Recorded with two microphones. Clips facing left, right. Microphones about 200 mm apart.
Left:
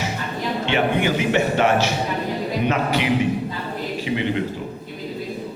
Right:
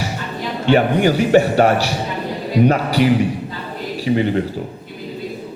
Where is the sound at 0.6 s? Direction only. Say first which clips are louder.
Right 7 dB; 40° right (ahead or behind).